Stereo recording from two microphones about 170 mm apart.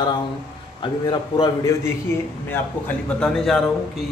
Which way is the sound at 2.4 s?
5° left (ahead or behind).